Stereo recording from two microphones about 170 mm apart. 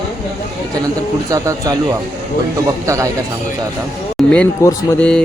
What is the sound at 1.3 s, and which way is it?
Speech, 20° right (ahead or behind).